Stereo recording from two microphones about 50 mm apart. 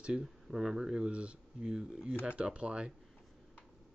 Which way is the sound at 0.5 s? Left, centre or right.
Centre.